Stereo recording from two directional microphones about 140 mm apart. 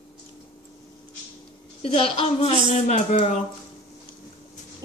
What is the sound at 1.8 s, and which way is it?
A woman's voice, 45° left (ahead or behind).